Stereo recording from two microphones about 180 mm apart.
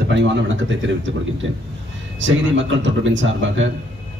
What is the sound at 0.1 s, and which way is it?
Speech, 90° right.